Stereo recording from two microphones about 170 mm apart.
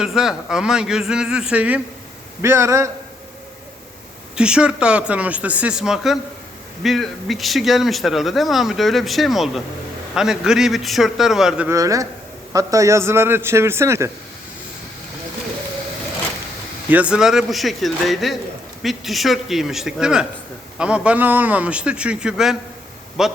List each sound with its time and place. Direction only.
0.0 s a man's voice: 5° right (ahead or behind)
4.4 s a man's voice: 5° right (ahead or behind)
11.7 s a man's voice: 20° right (ahead or behind)
16.9 s a man's voice: 5° right (ahead or behind)